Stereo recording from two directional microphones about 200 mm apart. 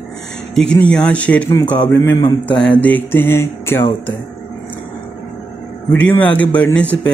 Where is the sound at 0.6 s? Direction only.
5° left (ahead or behind); by 2.5 s 20° left (ahead or behind).